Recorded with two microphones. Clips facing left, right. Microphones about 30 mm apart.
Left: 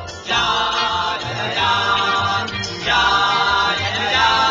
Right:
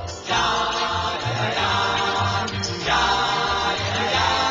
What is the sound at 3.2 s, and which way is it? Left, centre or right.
Chant, left.